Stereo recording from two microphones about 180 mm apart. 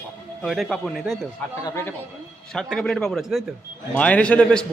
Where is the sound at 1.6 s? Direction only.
15° left (ahead or behind).